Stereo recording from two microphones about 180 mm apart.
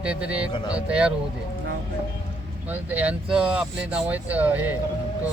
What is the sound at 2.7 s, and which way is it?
Speech, 10° right (ahead or behind).